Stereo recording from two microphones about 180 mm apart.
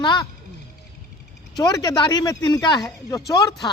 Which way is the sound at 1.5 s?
20° left (ahead or behind).